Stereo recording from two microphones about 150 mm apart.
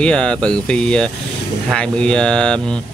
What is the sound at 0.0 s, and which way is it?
Speech, 5° left (ahead or behind).